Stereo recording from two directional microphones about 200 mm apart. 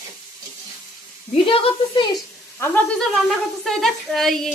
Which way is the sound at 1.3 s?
25° left (ahead or behind).